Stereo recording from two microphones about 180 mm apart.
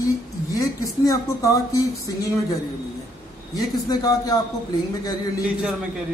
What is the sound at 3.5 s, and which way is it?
Speech, 20° left (ahead or behind).